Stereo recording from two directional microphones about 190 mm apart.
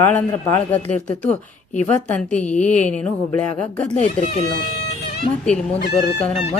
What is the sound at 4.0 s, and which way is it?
Speech, 35° left (ahead or behind).